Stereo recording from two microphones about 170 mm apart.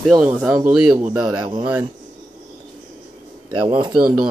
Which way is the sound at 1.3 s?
25° right (ahead or behind).